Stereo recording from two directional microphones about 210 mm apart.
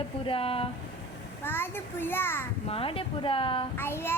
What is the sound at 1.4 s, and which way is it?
A child's voice, 10° left (ahead or behind).